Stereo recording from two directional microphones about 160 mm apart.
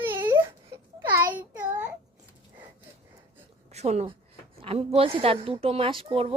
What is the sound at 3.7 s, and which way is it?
A woman's voice, 40° right (ahead or behind).